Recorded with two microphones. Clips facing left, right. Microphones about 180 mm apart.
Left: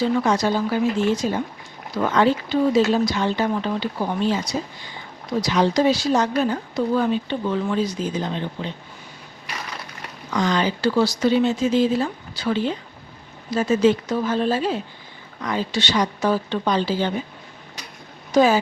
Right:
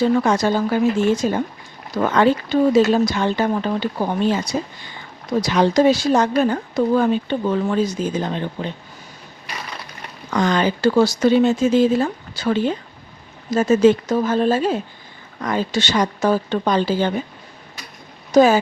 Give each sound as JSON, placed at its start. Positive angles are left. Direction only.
{"t": 0.0, "sound": "speech", "side_deg": -50}
{"t": 5.4, "sound": "speech", "side_deg": -50}
{"t": 10.3, "sound": "speech", "side_deg": -55}
{"t": 18.3, "sound": "speech", "side_deg": -45}